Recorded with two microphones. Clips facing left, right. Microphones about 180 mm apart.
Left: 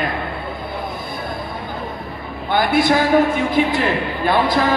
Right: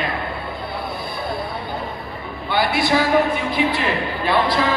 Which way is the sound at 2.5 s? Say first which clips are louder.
Left 3 dB; 45° left (ahead or behind).